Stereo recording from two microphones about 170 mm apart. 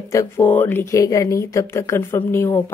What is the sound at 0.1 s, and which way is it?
A woman's voice, 15° left (ahead or behind).